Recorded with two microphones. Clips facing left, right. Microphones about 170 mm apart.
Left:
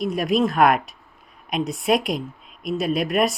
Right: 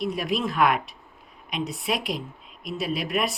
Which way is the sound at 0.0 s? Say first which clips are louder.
Left 6 dB; 45° left (ahead or behind).